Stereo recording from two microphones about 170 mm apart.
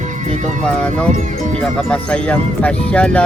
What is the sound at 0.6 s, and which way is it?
Speech, 5° left (ahead or behind).